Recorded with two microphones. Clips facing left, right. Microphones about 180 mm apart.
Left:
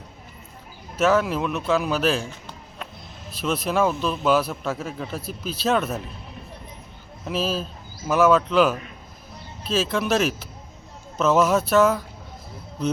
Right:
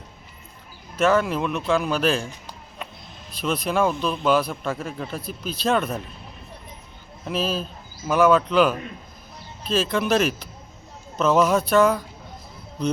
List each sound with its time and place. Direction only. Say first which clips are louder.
0.9 s speech: even; 5° left (ahead or behind)
3.3 s speech: even; 5° left (ahead or behind)
7.3 s speech: even; 5° left (ahead or behind)